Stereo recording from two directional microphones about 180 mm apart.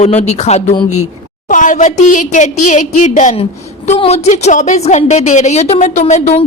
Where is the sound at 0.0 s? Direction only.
40° left (ahead or behind).